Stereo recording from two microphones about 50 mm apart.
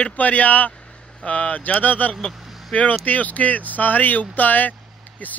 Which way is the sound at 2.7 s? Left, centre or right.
Left.